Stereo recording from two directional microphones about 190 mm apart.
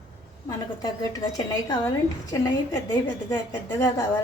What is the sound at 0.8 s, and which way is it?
A woman's voice, 20° left (ahead or behind).